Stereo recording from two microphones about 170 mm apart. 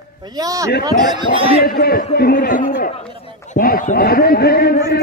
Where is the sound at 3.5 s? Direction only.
55° left (ahead or behind).